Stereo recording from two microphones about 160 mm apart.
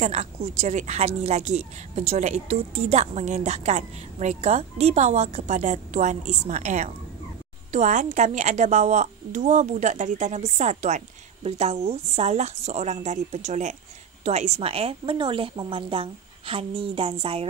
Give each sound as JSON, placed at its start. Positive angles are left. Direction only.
{"t": 0.0, "sound": "a woman's voice", "side_deg": -40}